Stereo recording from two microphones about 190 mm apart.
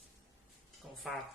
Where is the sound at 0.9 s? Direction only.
Centre (ahead or behind).